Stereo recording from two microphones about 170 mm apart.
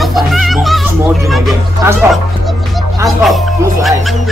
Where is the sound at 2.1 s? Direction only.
Centre (ahead or behind).